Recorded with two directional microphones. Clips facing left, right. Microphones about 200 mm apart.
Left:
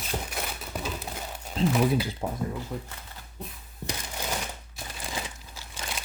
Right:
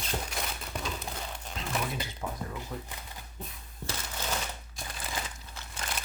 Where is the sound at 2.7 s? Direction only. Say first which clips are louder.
Left 4 dB; 10° left (ahead or behind).